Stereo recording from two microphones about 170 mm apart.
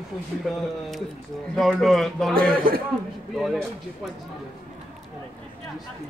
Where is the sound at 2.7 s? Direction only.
35° right (ahead or behind).